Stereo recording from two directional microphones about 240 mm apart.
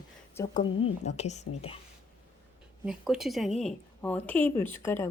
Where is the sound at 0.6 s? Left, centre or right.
Left.